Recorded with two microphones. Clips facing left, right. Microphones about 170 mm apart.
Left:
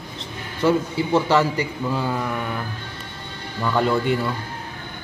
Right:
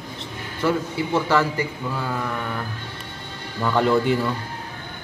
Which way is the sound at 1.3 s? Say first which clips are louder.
Left 2 dB; 20° left (ahead or behind).